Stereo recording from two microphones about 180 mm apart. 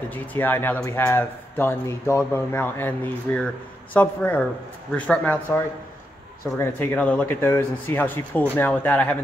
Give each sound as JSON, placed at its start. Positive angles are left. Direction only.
{"t": 0.1, "sound": "speech", "side_deg": 10}
{"t": 6.6, "sound": "speech", "side_deg": 10}